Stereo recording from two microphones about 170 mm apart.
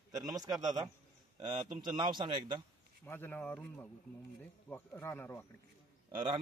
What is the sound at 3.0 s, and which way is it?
A man's voice, 10° left (ahead or behind).